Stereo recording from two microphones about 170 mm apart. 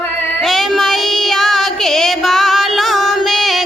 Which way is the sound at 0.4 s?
Centre (ahead or behind).